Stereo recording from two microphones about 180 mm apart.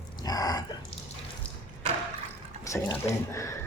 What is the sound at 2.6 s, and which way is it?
Speech, 15° left (ahead or behind).